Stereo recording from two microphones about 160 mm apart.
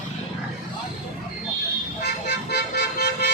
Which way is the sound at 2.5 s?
80° left.